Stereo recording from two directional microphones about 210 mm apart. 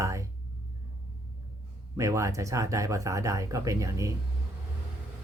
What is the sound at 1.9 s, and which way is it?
Speech, 15° right (ahead or behind).